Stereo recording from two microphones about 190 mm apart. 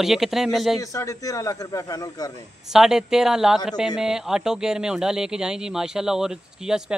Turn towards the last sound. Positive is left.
turn(degrees=-5)  # may be behind; listen again after turning